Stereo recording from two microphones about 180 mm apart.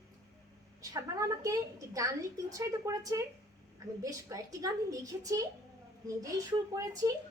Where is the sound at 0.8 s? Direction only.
20° right (ahead or behind).